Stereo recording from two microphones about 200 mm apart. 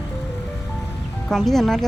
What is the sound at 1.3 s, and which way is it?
Speech, centre (ahead or behind).